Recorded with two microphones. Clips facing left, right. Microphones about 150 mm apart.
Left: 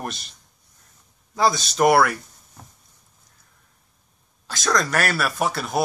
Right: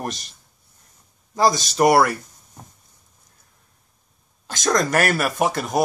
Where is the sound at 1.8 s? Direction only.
15° right (ahead or behind).